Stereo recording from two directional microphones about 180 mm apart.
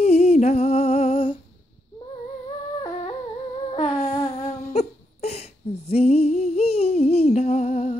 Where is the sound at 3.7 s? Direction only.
30° left (ahead or behind).